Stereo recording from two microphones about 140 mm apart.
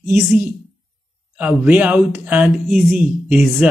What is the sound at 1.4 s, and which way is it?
Speech, 10° right (ahead or behind).